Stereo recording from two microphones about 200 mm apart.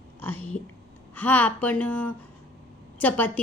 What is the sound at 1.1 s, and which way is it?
A woman's voice, 10° left (ahead or behind).